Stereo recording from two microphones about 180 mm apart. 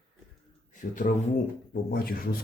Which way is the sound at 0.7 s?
45° left (ahead or behind).